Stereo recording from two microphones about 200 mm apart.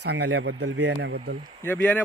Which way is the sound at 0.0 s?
60° right (ahead or behind).